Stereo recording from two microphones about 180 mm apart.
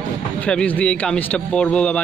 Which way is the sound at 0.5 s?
5° left (ahead or behind).